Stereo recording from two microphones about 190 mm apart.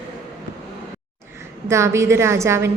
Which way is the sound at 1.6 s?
15° right (ahead or behind).